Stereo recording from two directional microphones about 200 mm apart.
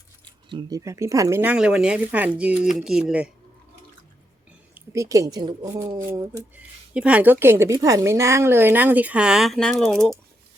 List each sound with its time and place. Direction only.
0.5 s a woman's voice: 15° right (ahead or behind)
4.7 s a woman's voice: 15° right (ahead or behind); by 10.2 s 5° left (ahead or behind)